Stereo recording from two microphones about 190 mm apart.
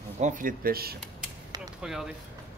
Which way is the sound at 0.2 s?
45° right (ahead or behind).